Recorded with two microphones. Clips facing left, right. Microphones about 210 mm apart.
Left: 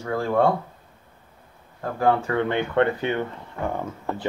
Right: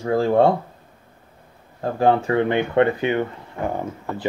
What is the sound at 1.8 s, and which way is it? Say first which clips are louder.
Speech: right 3 dB; 25° right (ahead or behind).